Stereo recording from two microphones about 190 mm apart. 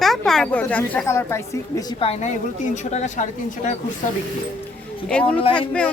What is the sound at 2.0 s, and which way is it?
A woman's voice, 30° left (ahead or behind).